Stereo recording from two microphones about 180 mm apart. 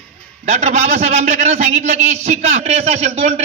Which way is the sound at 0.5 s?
40° right (ahead or behind).